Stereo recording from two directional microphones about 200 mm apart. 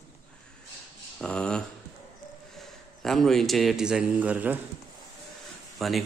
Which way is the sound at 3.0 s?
Centre (ahead or behind).